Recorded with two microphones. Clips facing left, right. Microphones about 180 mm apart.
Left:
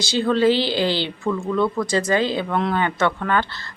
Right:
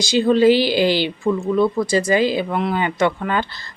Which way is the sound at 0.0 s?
15° right (ahead or behind).